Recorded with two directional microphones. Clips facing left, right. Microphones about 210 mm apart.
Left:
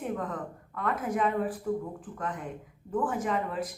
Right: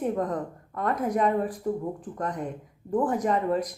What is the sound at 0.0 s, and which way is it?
A woman's voice, 40° right (ahead or behind).